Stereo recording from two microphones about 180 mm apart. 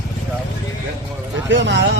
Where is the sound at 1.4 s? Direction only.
80° right.